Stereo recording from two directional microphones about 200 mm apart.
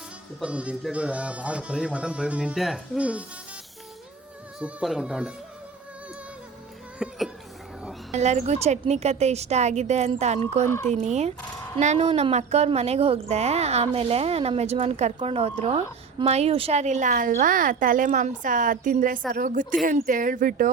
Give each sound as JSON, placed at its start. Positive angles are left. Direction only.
{"t": 0.3, "sound": "speech", "side_deg": -5}
{"t": 4.6, "sound": "speech", "side_deg": 0}
{"t": 7.0, "sound": "speech", "side_deg": 0}
{"t": 8.1, "sound": "a woman's voice", "side_deg": -35}